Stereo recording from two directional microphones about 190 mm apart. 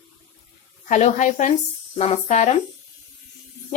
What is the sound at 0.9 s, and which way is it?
A woman's voice, 40° left (ahead or behind).